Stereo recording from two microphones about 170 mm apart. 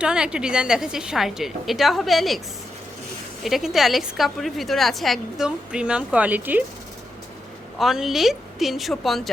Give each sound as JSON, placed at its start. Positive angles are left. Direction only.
{"t": 0.0, "sound": "a woman's voice", "side_deg": -5}
{"t": 3.4, "sound": "a woman's voice", "side_deg": 0}
{"t": 7.8, "sound": "a woman's voice", "side_deg": 0}